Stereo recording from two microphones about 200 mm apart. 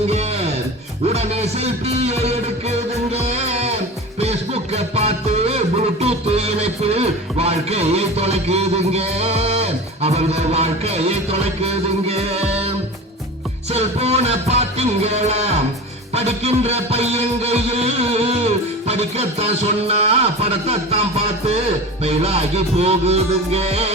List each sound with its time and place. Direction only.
0.1 s music: 30° right (ahead or behind)